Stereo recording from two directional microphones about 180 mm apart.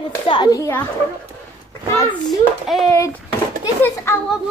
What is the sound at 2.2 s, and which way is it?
Speech, centre (ahead or behind).